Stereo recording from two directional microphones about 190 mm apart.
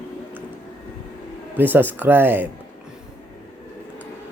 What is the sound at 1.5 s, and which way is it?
Speech, 10° right (ahead or behind).